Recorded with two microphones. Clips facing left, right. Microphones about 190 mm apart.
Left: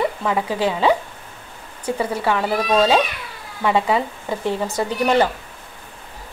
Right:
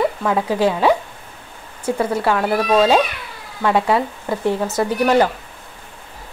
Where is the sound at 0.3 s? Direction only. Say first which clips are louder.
Right 4 dB; 15° right (ahead or behind).